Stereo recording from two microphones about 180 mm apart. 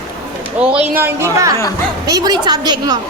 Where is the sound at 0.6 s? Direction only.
5° right (ahead or behind); by 3.0 s 25° right (ahead or behind).